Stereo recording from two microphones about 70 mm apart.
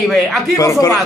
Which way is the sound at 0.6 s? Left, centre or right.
Left.